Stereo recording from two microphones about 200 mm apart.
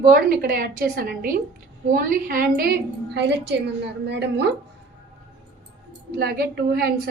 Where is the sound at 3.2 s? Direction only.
60° right (ahead or behind).